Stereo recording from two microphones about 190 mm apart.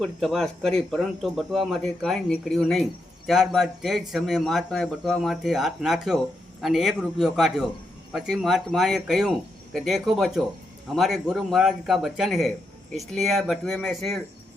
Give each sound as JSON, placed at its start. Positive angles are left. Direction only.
{"t": 0.0, "sound": "a man's voice", "side_deg": 0}